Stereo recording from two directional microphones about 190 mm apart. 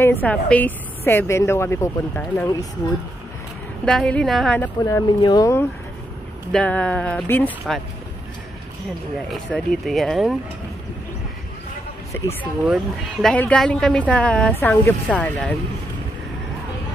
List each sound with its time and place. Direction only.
0.0 s a woman's voice: 10° left (ahead or behind)
3.8 s speech: 5° left (ahead or behind)
4.8 s a woman's voice: 20° left (ahead or behind)
9.3 s speech: centre (ahead or behind)
12.6 s speech: centre (ahead or behind)